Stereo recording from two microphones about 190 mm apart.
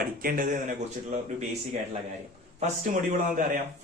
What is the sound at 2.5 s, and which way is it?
Speech, 40° right (ahead or behind).